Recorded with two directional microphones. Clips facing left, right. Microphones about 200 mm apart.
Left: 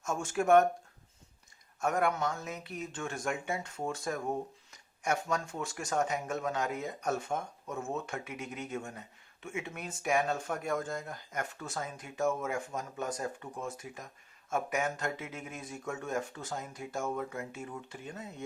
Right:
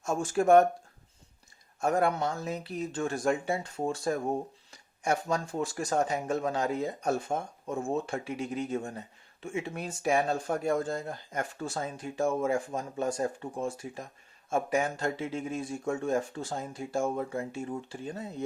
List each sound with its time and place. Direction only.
0.0 s speech: 35° right (ahead or behind)
1.8 s speech: 30° right (ahead or behind)